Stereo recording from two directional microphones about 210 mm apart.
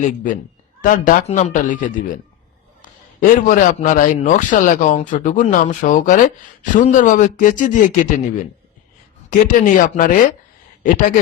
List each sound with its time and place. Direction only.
0.8 s a man's voice: 40° left (ahead or behind)
9.3 s a man's voice: 40° left (ahead or behind)